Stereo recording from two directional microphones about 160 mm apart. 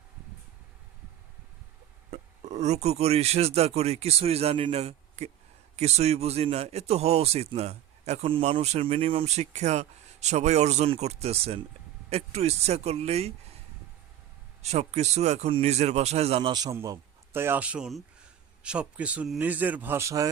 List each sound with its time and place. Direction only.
2.0 s a man's voice: 40° right (ahead or behind)
14.6 s a man's voice: 45° right (ahead or behind); by 20.3 s 20° right (ahead or behind)